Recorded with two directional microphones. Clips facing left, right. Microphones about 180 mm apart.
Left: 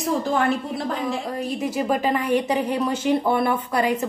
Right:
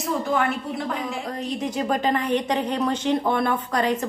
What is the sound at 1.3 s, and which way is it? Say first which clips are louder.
A woman's voice: left 2 dB; 10° left (ahead or behind).